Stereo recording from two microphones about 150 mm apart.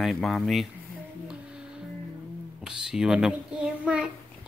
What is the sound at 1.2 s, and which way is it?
Music, 5° right (ahead or behind).